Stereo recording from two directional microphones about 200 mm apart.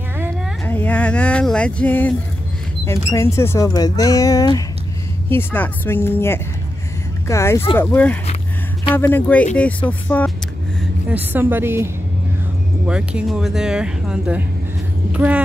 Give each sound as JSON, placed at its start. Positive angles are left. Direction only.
{"t": 0.7, "sound": "speech", "side_deg": 10}
{"t": 10.8, "sound": "a woman's voice", "side_deg": -10}